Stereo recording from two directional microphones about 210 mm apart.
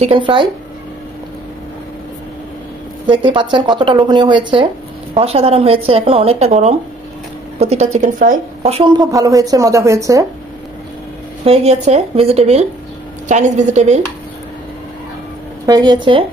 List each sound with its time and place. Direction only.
0.0 s speech: 25° right (ahead or behind)
3.1 s speech: 25° right (ahead or behind)
11.4 s a woman's voice: 30° right (ahead or behind)
15.6 s speech: 20° right (ahead or behind)